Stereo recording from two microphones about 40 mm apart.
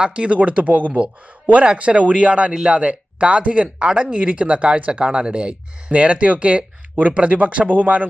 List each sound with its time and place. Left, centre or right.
0.0 s speech: right
0.9 s speech: right